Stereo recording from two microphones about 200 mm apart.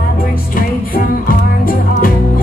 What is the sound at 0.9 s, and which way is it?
Music, 45° left (ahead or behind).